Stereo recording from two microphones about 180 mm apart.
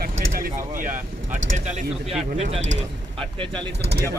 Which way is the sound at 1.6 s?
35° right (ahead or behind).